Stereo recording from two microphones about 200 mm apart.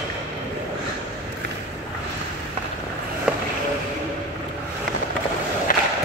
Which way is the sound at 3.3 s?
5° right (ahead or behind).